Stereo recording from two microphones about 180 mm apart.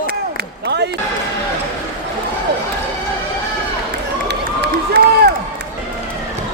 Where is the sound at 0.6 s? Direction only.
70° right (ahead or behind).